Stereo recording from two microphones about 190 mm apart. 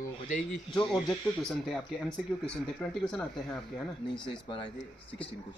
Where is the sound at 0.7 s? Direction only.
5° left (ahead or behind).